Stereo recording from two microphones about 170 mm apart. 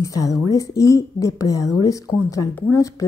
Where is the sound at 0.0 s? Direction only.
20° left (ahead or behind).